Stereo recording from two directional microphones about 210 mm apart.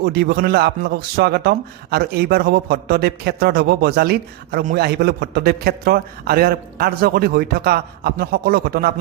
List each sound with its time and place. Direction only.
0.0 s a man's voice: 50° right (ahead or behind)